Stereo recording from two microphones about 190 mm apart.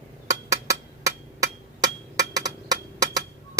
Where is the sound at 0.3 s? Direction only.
15° right (ahead or behind).